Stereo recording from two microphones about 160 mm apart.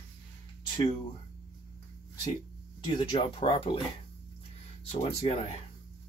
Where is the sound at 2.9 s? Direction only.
30° left (ahead or behind).